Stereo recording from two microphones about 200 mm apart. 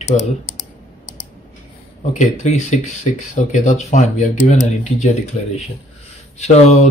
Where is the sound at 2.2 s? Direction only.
35° left (ahead or behind).